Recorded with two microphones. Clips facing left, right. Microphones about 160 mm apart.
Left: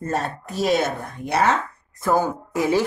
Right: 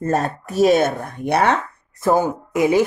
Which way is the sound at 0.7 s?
55° right (ahead or behind).